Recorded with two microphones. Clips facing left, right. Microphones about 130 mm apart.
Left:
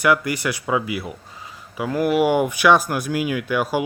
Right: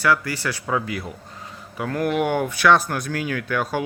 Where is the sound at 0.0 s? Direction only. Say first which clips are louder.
Left 2 dB; 15° left (ahead or behind).